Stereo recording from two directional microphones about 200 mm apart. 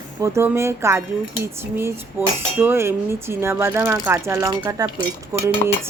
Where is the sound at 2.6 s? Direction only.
10° right (ahead or behind).